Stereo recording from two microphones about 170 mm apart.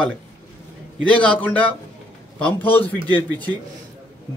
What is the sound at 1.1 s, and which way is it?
A man's voice, 5° left (ahead or behind).